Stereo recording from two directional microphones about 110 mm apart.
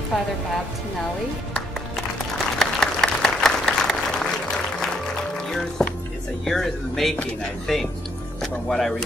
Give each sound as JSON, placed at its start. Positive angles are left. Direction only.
{"t": 0.1, "sound": "speech", "side_deg": 0}
{"t": 2.6, "sound": "applause", "side_deg": 5}
{"t": 6.4, "sound": "speech", "side_deg": 0}